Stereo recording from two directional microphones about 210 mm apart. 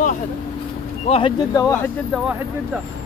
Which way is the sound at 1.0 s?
25° left (ahead or behind).